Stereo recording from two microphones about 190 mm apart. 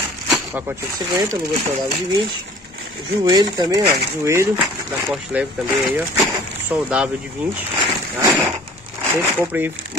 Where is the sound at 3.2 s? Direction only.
20° right (ahead or behind); by 5.5 s 5° right (ahead or behind).